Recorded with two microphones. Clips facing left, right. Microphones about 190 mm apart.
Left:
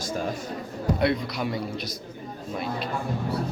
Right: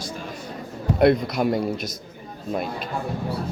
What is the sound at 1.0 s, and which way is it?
Speech, 50° right (ahead or behind).